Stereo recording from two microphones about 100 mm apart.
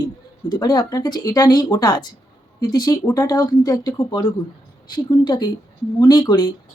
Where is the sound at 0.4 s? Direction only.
45° left (ahead or behind).